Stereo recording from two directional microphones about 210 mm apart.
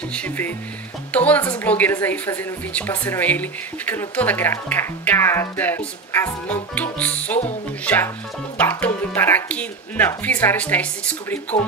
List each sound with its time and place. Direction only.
0.1 s a woman's voice: 5° left (ahead or behind)